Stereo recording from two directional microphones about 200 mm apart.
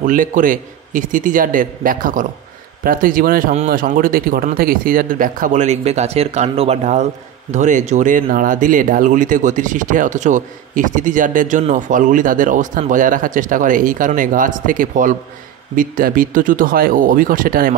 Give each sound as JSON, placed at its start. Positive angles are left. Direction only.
{"t": 0.0, "sound": "speech", "side_deg": -40}